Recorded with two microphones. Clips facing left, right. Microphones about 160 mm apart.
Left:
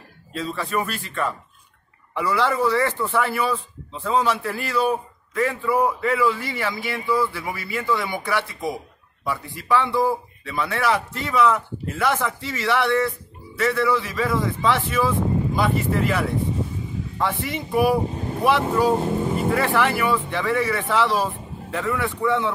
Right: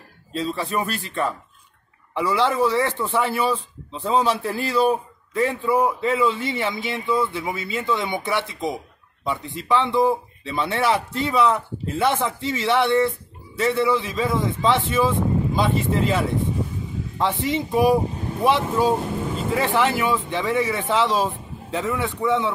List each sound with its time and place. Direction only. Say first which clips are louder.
0.4 s speech: right 1 dB; 30° right (ahead or behind)
2.3 s a man's voice: right 1 dB; 25° right (ahead or behind)